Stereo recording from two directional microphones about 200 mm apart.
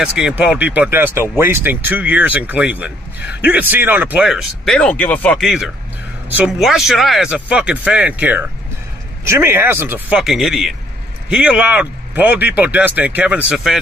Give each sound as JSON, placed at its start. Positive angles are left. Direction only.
{"t": 0.0, "sound": "a man's voice", "side_deg": -5}